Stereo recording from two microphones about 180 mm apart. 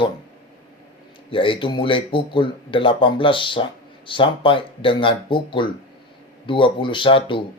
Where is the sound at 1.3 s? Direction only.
30° left (ahead or behind).